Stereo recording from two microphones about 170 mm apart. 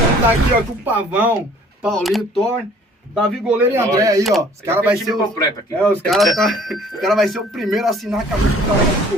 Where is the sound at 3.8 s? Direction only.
20° right (ahead or behind).